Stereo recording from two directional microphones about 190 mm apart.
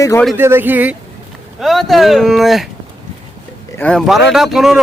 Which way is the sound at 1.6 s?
Centre (ahead or behind).